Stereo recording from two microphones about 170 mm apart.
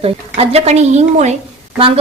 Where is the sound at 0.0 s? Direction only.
35° right (ahead or behind).